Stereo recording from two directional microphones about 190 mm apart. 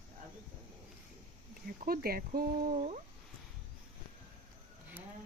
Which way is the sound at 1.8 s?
50° right (ahead or behind).